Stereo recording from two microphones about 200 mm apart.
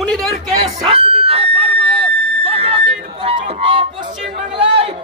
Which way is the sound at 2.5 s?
30° right (ahead or behind).